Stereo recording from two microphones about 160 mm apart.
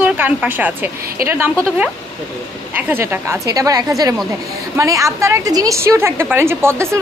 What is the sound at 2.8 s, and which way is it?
A woman's voice, 15° right (ahead or behind).